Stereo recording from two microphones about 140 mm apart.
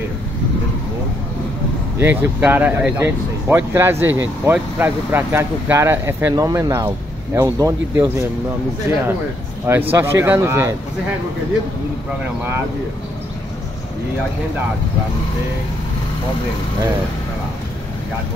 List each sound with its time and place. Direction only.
2.0 s speech: 15° right (ahead or behind)
9.7 s speech: 15° right (ahead or behind)